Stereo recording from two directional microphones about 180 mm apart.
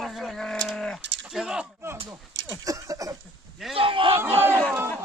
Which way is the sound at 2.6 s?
20° right (ahead or behind).